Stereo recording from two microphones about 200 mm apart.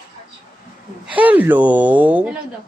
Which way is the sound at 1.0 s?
5° right (ahead or behind).